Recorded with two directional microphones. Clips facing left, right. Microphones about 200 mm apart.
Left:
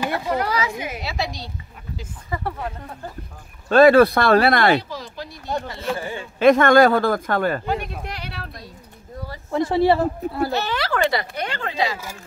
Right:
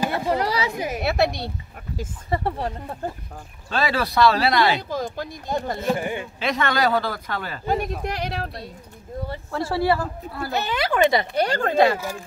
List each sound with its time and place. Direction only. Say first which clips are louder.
0.0 s a sound: right 1 dB; 35° right (ahead or behind)
1.0 s a woman's voice: right 7 dB; 60° right (ahead or behind)
2.2 s speech: right 3 dB; 30° right (ahead or behind)
3.6 s speech: left 13 dB; 50° left (ahead or behind)
4.8 s speech: right 6 dB; 50° right (ahead or behind)
5.9 s speech: right 3 dB; 20° right (ahead or behind)
6.4 s speech: left 10 dB; 50° left (ahead or behind)
7.6 s speech: right 2 dB; 40° right (ahead or behind)
9.5 s speech: left 5 dB; 20° left (ahead or behind)
10.5 s speech: even; 20° right (ahead or behind)
11.3 s speech: right 7 dB; 40° right (ahead or behind); by 12.2 s 55° right (ahead or behind)